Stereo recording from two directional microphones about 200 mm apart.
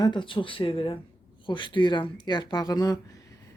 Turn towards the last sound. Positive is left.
turn(degrees=20)  # may be behind; listen again after turning